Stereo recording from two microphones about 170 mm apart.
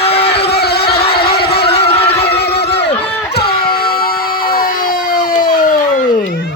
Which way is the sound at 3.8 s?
60° left (ahead or behind).